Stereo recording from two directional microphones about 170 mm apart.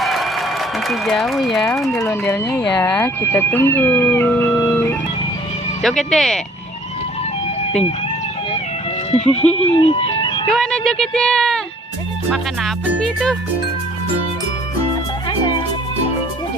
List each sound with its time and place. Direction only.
0.0 s a sound: centre (ahead or behind)
0.9 s speech: centre (ahead or behind)
2.0 s speech: 15° left (ahead or behind)
5.8 s speech: centre (ahead or behind)
7.6 s music: 40° left (ahead or behind)
9.1 s speech: centre (ahead or behind)
9.6 s speech: 35° left (ahead or behind)
10.5 s speech: centre (ahead or behind)